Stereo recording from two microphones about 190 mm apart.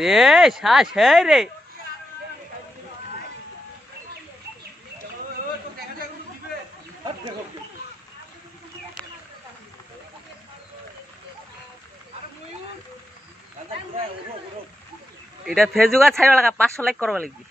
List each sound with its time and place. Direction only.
0.0 s speech: centre (ahead or behind)
15.4 s speech: centre (ahead or behind)